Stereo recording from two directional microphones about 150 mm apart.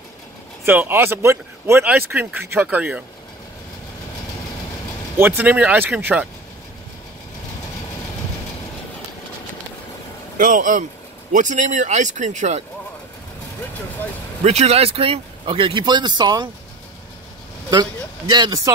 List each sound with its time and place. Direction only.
0.7 s speech: 15° right (ahead or behind)
5.1 s speech: 15° right (ahead or behind)
10.3 s speech: 60° right (ahead or behind)
14.4 s speech: 45° right (ahead or behind); by 16.4 s 30° right (ahead or behind)
18.3 s speech: 25° right (ahead or behind)